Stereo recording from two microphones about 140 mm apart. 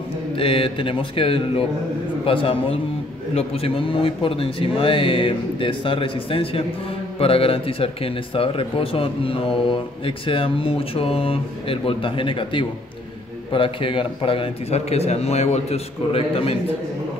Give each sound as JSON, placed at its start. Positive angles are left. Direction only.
{"t": 0.4, "sound": "a man's voice", "side_deg": 40}